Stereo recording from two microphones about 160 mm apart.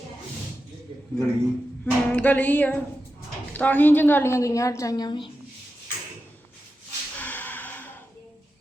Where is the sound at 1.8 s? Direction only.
10° left (ahead or behind); by 5.3 s 30° left (ahead or behind).